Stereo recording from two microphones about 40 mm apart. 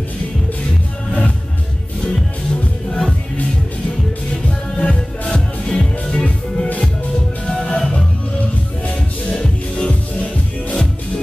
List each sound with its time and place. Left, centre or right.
2.9 s music: centre
4.5 s music: left
7.5 s music: centre